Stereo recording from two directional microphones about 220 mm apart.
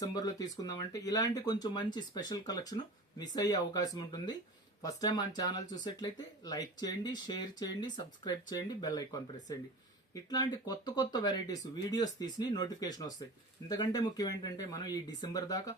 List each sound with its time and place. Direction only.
0.0 s speech: 15° left (ahead or behind)
10.2 s speech: 20° left (ahead or behind)